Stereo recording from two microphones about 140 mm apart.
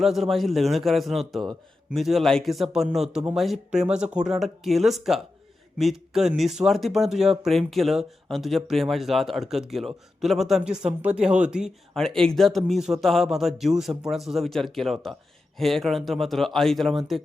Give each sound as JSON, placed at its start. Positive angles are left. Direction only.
{"t": 0.0, "sound": "a man's voice", "side_deg": 0}